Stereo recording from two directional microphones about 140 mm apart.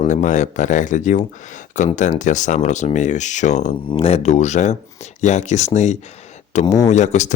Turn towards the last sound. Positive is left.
turn(degrees=55)  # may be behind; listen again after turning